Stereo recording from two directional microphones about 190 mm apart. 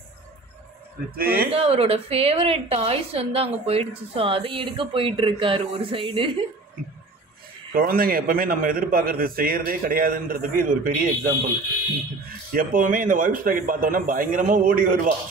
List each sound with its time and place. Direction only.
1.1 s a man's voice: 55° right (ahead or behind)
1.5 s a woman's voice: 30° right (ahead or behind)
7.7 s a man's voice: 50° right (ahead or behind)
12.3 s a man's voice: 50° right (ahead or behind)